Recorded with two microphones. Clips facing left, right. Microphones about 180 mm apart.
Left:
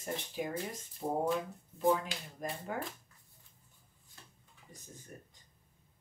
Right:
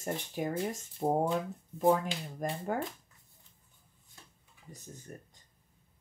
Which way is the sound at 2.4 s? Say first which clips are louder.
Right 5 dB; 45° right (ahead or behind).